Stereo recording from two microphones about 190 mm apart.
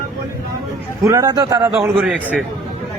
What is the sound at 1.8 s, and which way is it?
Speech, 10° right (ahead or behind).